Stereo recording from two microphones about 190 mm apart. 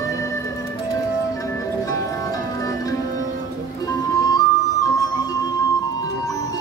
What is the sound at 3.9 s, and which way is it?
Music, 20° left (ahead or behind).